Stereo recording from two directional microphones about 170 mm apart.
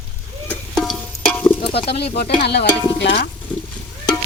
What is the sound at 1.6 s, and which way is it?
Speech, 35° left (ahead or behind).